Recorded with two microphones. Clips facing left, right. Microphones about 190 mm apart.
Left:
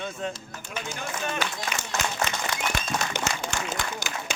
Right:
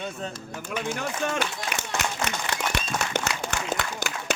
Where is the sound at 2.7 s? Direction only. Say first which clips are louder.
Right 1 dB; 65° right (ahead or behind).